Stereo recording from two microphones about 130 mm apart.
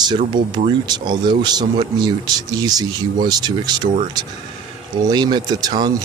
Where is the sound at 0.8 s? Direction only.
35° right (ahead or behind).